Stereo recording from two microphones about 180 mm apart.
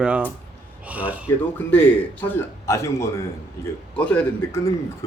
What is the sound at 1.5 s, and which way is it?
A man's voice, 10° left (ahead or behind).